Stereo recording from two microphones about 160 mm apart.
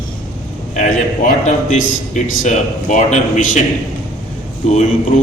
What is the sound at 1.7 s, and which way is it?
A man's voice, 55° left (ahead or behind).